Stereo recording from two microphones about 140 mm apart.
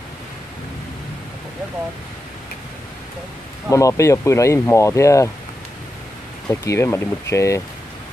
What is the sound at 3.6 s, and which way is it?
Speech, 20° left (ahead or behind).